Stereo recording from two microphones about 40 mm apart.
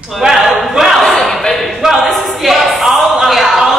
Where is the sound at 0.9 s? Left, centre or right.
Centre.